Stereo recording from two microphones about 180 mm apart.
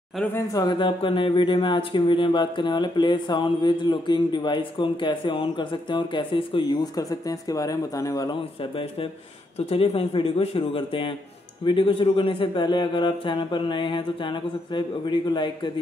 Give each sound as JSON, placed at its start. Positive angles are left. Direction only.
{"t": 0.1, "sound": "speech", "side_deg": 10}
{"t": 8.5, "sound": "a man's voice", "side_deg": 30}